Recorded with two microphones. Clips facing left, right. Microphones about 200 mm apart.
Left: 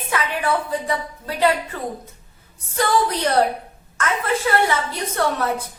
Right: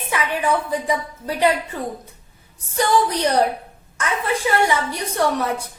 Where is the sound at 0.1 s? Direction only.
15° right (ahead or behind).